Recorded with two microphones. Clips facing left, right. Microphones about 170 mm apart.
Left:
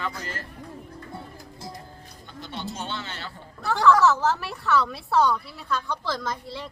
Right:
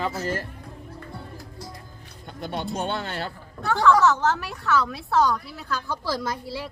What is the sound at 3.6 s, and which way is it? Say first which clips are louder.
A woman's voice: even; centre (ahead or behind).